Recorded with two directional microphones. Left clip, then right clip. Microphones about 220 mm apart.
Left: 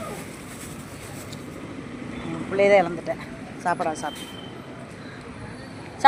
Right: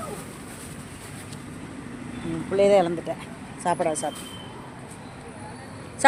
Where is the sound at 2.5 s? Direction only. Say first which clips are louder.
Left 1 dB; 20° right (ahead or behind).